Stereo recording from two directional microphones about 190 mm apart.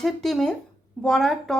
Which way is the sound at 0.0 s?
Centre (ahead or behind).